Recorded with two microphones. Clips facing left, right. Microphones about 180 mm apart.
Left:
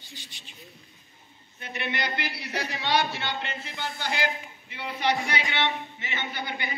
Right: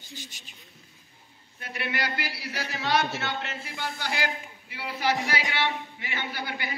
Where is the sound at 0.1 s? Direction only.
45° right (ahead or behind).